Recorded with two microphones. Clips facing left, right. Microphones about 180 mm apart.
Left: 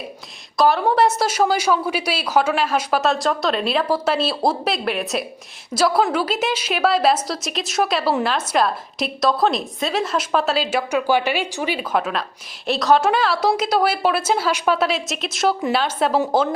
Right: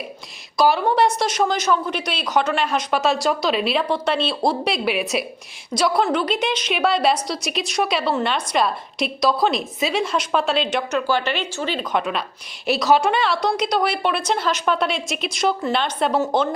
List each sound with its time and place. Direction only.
0.5 s a woman's voice: centre (ahead or behind)